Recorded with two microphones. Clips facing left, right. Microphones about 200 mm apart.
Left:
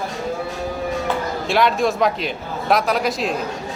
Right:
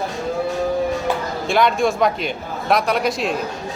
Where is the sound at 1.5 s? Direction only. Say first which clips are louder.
Right 1 dB; centre (ahead or behind).